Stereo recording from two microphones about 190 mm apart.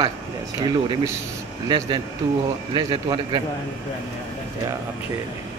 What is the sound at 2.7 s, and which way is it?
Speech, 25° right (ahead or behind).